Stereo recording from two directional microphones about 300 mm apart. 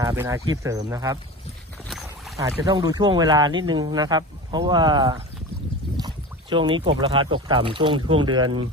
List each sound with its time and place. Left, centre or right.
0.0 s speech: centre
1.9 s rowboat: centre
2.4 s speech: centre
6.5 s speech: centre